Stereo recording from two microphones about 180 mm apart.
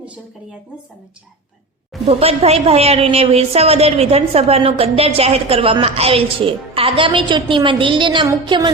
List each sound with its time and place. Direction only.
2.0 s a woman's voice: 35° right (ahead or behind)